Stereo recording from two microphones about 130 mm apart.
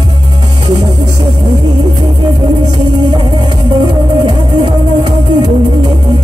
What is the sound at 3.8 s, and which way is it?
Music, 35° right (ahead or behind).